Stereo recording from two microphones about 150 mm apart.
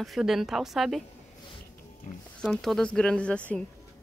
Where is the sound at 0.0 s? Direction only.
Centre (ahead or behind).